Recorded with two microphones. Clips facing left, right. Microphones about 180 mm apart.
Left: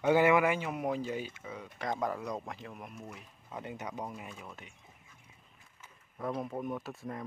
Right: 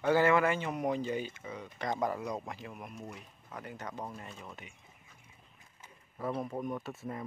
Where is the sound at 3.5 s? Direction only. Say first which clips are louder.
Left 2 dB; 20° left (ahead or behind).